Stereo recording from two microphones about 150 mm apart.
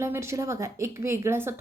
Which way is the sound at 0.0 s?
20° right (ahead or behind).